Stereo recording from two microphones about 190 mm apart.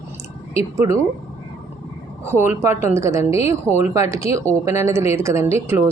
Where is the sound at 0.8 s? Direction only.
20° right (ahead or behind).